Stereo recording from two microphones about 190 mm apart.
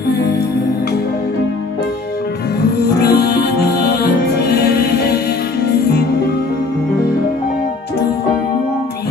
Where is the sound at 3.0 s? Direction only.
55° left (ahead or behind).